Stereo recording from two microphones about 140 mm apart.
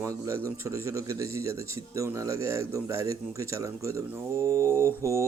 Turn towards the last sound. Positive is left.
turn(degrees=-20)  # may be behind; listen again after turning